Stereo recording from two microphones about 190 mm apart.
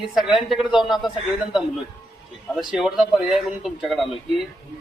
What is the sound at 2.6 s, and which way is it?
Speech, centre (ahead or behind).